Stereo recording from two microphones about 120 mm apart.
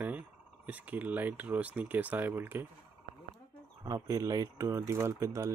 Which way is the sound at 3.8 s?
30° right (ahead or behind).